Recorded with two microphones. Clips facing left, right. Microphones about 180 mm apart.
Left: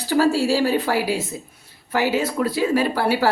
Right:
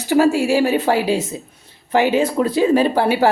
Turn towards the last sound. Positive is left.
turn(degrees=-15)  # may be behind; listen again after turning